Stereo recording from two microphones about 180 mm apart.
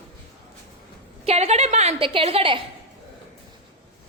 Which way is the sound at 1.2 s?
35° right (ahead or behind).